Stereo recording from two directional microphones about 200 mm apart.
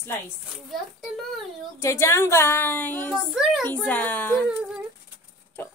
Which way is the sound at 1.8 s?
15° left (ahead or behind).